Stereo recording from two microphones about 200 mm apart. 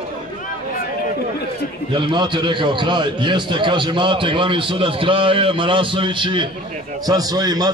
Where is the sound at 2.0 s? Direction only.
25° right (ahead or behind).